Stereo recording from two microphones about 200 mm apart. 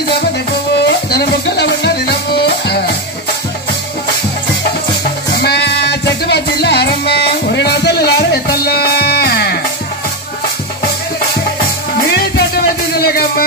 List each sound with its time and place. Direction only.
0.1 s music: 55° left (ahead or behind)
5.4 s music: 55° left (ahead or behind)
12.0 s music: 55° left (ahead or behind)